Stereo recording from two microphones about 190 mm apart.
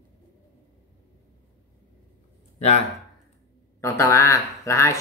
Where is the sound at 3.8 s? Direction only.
15° left (ahead or behind).